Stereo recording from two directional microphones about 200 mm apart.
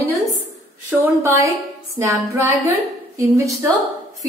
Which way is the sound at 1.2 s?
15° right (ahead or behind).